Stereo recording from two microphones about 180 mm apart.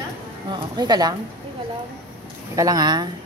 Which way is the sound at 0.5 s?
20° right (ahead or behind).